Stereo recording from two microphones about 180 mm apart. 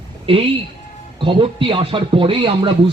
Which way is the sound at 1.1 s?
30° right (ahead or behind).